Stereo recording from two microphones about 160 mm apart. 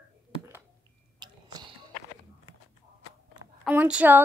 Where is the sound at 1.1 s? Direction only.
25° right (ahead or behind).